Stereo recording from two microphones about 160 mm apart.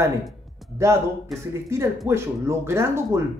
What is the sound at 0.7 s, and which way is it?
Speech, 15° right (ahead or behind).